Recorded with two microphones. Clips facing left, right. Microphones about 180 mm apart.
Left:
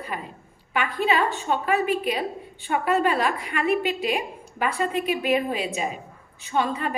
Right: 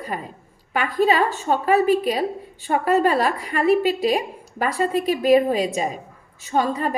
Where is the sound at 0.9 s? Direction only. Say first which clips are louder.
Right 5 dB; 40° right (ahead or behind).